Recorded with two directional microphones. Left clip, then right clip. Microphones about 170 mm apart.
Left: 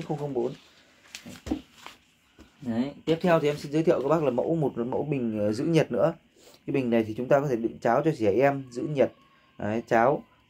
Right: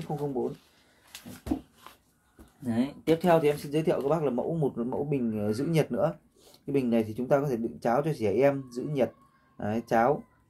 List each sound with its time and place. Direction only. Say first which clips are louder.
1.9 s a sound: left 5 dB; 55° left (ahead or behind)
2.6 s speech: even; centre (ahead or behind)
3.2 s a man's voice: even; 15° left (ahead or behind)